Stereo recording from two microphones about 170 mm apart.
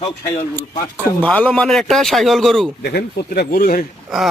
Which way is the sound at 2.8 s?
70° left (ahead or behind).